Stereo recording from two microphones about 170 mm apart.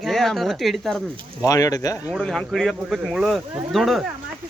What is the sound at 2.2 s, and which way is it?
Speech, 5° left (ahead or behind).